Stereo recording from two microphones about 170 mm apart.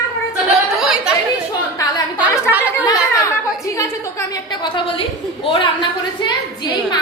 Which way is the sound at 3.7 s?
20° left (ahead or behind).